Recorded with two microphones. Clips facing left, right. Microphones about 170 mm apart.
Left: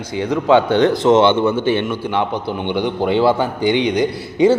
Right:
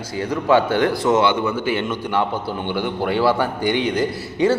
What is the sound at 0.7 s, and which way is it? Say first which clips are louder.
A man's voice: left 5 dB; 20° left (ahead or behind).